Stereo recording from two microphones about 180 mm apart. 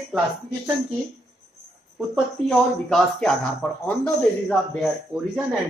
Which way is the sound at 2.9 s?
Centre (ahead or behind).